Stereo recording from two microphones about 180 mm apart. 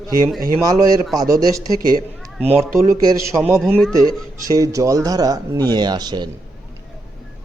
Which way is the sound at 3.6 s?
Centre (ahead or behind).